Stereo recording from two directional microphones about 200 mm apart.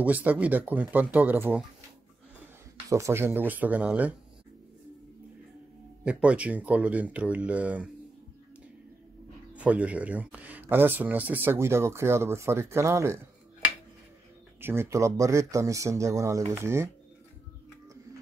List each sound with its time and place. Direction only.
0.0 s speech: 10° right (ahead or behind)
2.9 s speech: 15° right (ahead or behind)
6.0 s speech: 5° right (ahead or behind)
9.5 s speech: 5° right (ahead or behind)
14.6 s speech: 10° right (ahead or behind)